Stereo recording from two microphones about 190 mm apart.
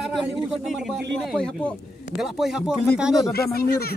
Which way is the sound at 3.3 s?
55° left (ahead or behind).